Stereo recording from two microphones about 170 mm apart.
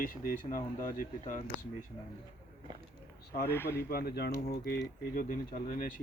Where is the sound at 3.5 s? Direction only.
15° left (ahead or behind).